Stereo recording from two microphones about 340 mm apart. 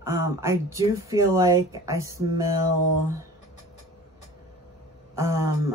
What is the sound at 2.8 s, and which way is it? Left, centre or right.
Speech, right.